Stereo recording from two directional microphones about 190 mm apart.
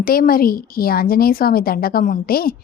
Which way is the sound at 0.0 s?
50° left (ahead or behind).